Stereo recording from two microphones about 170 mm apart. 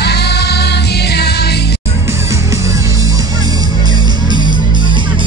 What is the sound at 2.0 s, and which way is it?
Music, 15° right (ahead or behind).